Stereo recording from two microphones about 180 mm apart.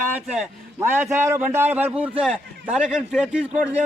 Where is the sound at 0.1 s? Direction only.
10° right (ahead or behind).